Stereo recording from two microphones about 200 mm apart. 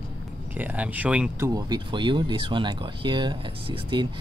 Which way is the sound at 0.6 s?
10° right (ahead or behind).